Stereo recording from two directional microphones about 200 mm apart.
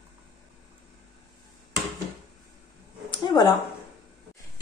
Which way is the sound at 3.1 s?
20° left (ahead or behind).